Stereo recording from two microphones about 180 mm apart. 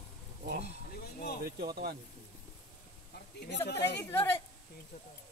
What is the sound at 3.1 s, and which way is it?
Speech, 65° left (ahead or behind).